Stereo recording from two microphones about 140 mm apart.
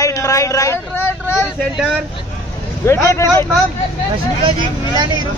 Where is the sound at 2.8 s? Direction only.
20° left (ahead or behind).